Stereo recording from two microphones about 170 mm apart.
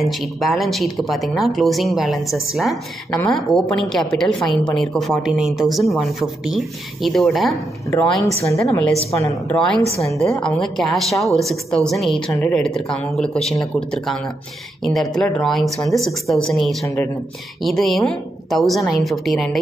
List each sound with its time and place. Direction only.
0.0 s a woman's voice: centre (ahead or behind)
16.8 s a woman's voice: 20° left (ahead or behind)
17.6 s a woman's voice: centre (ahead or behind)